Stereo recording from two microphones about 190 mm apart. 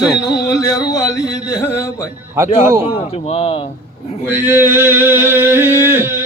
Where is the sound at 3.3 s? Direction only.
30° left (ahead or behind).